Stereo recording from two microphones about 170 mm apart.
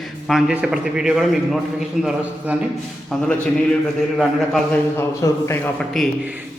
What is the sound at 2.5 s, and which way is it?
Speech, 10° right (ahead or behind).